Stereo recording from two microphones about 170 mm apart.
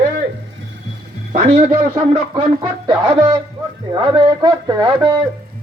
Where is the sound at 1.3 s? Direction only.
40° right (ahead or behind).